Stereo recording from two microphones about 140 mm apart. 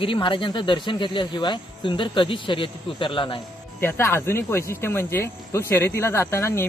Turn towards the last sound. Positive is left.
turn(degrees=20)  # may be behind; listen again after turning